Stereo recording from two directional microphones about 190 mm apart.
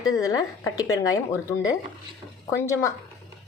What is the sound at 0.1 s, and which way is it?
Speech, 20° left (ahead or behind).